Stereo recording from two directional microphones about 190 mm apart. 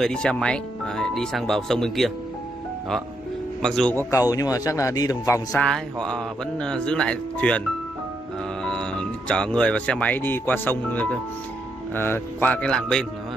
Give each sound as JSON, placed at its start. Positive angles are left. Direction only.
{"t": 0.0, "sound": "speech", "side_deg": 5}
{"t": 3.6, "sound": "speech", "side_deg": 5}
{"t": 4.0, "sound": "speech", "side_deg": 15}
{"t": 5.5, "sound": "speech", "side_deg": 5}
{"t": 9.3, "sound": "speech", "side_deg": 5}